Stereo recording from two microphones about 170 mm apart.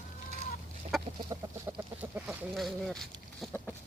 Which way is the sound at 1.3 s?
25° right (ahead or behind).